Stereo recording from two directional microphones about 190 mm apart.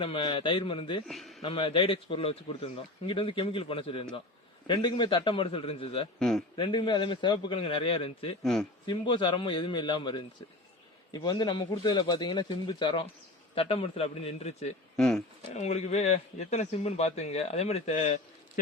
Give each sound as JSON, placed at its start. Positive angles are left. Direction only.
{"t": 0.0, "sound": "speech", "side_deg": 25}
{"t": 1.0, "sound": "a man's voice", "side_deg": 0}
{"t": 1.4, "sound": "speech", "side_deg": 25}
{"t": 6.1, "sound": "a man's voice", "side_deg": 5}
{"t": 6.6, "sound": "a man's voice", "side_deg": 25}
{"t": 14.9, "sound": "speech", "side_deg": 5}
{"t": 15.5, "sound": "a man's voice", "side_deg": 35}